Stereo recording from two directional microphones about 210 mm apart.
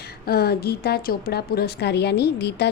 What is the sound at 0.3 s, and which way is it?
A woman's voice, 50° left (ahead or behind).